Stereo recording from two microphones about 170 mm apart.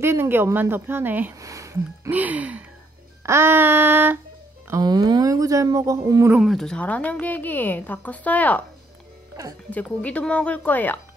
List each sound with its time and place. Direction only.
0.0 s a woman's voice: 15° right (ahead or behind)
4.6 s speech: 20° right (ahead or behind)
6.3 s a woman's voice: centre (ahead or behind)
9.7 s a woman's voice: 10° left (ahead or behind)